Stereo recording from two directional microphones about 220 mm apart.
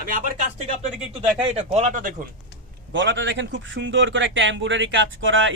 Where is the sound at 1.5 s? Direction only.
30° right (ahead or behind).